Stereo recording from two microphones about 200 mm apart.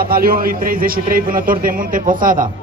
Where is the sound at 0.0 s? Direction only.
45° right (ahead or behind).